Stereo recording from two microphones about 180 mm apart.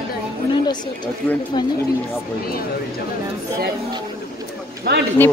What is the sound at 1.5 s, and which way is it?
Speech, 25° left (ahead or behind).